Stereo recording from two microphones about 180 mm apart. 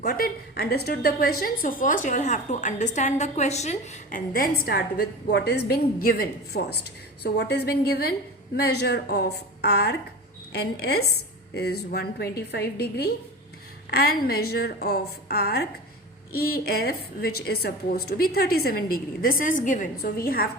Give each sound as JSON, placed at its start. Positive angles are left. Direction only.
{"t": 0.0, "sound": "a woman's voice", "side_deg": 55}